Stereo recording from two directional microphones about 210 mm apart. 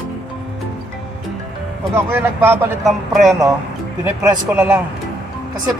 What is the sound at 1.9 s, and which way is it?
Speech, 10° right (ahead or behind).